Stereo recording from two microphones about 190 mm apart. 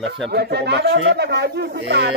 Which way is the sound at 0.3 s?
60° right (ahead or behind).